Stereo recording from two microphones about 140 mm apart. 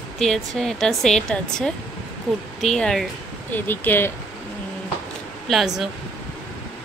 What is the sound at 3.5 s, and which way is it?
Speech, 15° left (ahead or behind).